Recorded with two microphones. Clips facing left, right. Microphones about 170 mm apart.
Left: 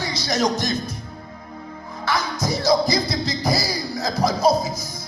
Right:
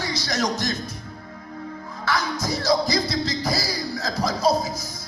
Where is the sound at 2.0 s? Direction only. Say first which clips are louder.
Left 2 dB; 15° left (ahead or behind).